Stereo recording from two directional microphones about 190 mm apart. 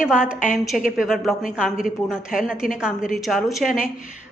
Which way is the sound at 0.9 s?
Centre (ahead or behind).